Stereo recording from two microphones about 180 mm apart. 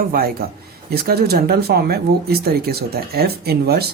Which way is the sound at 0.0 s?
55° right (ahead or behind).